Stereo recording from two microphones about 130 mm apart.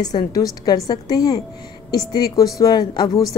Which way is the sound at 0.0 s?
30° left (ahead or behind).